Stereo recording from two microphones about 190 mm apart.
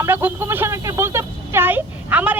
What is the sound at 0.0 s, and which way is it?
A woman's voice, 10° right (ahead or behind).